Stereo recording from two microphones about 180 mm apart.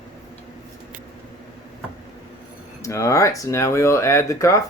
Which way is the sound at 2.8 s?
15° left (ahead or behind).